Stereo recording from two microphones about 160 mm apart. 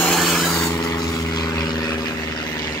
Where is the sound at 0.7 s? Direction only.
20° left (ahead or behind).